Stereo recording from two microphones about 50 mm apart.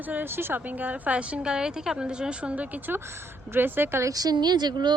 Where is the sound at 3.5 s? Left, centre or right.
Right.